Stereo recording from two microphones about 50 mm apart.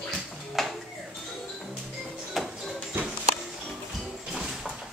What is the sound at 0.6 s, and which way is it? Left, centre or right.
Music, centre.